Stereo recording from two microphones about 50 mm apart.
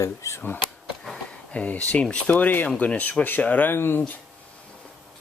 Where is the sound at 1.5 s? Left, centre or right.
Left.